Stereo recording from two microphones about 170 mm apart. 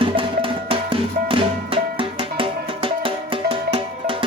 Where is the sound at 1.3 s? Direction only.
30° right (ahead or behind).